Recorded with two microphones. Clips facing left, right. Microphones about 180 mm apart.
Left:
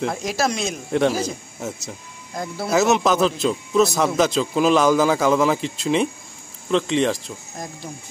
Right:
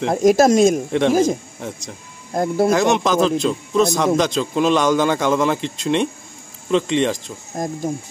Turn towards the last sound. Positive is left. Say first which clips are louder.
# right 10 dB
turn(degrees=-45)  # may be behind; listen again after turning